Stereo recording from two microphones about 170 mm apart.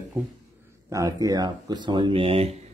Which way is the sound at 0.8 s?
20° right (ahead or behind).